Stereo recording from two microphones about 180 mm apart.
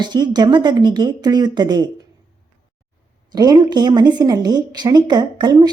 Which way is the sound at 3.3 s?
20° right (ahead or behind).